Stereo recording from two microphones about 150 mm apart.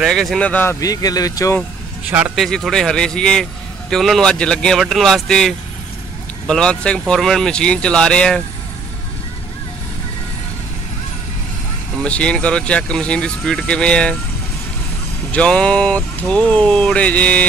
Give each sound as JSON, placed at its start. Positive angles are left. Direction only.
{"t": 0.0, "sound": "speech", "side_deg": 0}
{"t": 0.7, "sound": "speech", "side_deg": 25}
{"t": 2.0, "sound": "speech", "side_deg": -10}
{"t": 12.0, "sound": "speech", "side_deg": 5}
{"t": 15.3, "sound": "speech", "side_deg": 5}